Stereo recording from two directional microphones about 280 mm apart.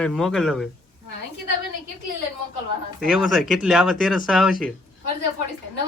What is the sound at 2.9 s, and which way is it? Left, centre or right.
Speech, centre.